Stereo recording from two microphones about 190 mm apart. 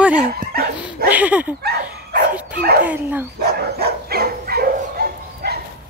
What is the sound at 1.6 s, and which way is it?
Dog, 60° right (ahead or behind).